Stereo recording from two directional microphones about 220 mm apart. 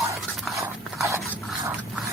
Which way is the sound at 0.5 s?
15° right (ahead or behind).